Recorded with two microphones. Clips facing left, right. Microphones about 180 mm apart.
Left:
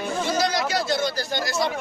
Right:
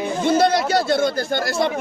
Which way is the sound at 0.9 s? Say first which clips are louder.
Right 6 dB; 55° right (ahead or behind).